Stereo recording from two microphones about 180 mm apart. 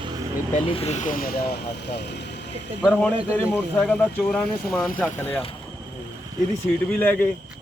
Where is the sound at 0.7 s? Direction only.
35° left (ahead or behind); by 1.4 s 50° left (ahead or behind).